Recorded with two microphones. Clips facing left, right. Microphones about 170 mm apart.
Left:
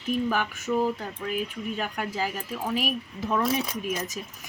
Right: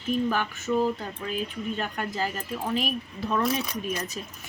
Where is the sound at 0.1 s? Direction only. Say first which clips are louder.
Even; 10° left (ahead or behind).